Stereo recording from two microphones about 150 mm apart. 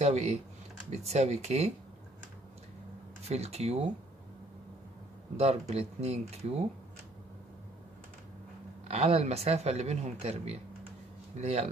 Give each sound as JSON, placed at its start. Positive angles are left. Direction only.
{"t": 0.0, "sound": "speech", "side_deg": -45}
{"t": 3.3, "sound": "speech", "side_deg": -45}
{"t": 5.4, "sound": "speech", "side_deg": -45}
{"t": 8.8, "sound": "speech", "side_deg": -40}